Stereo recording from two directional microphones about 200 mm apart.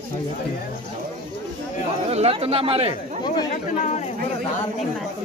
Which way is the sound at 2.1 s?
30° right (ahead or behind).